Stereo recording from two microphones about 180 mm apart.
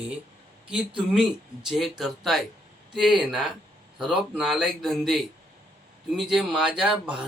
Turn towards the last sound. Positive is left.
turn(degrees=-5)  # may be behind; listen again after turning